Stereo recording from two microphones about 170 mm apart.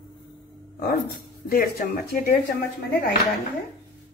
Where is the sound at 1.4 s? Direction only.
60° left (ahead or behind).